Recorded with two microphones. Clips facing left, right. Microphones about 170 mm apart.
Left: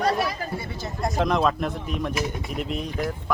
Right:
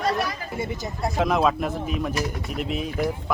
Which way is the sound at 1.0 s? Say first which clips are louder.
Right 1 dB; 5° right (ahead or behind).